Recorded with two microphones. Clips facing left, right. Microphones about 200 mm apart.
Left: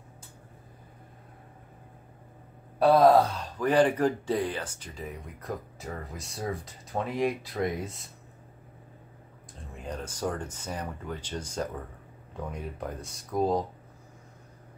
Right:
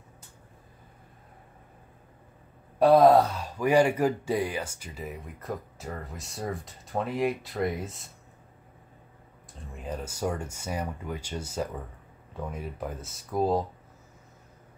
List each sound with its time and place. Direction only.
2.8 s speech: centre (ahead or behind)
9.6 s speech: 5° right (ahead or behind)